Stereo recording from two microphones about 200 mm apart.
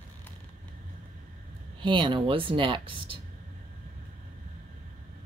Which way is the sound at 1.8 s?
25° right (ahead or behind).